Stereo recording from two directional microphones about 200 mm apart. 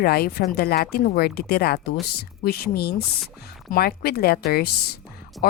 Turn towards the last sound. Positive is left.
turn(degrees=0)  # may be behind; listen again after turning